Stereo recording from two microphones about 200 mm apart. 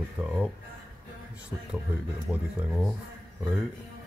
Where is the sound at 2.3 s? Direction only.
Centre (ahead or behind).